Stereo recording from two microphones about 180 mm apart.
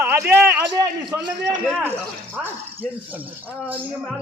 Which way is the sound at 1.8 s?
10° right (ahead or behind).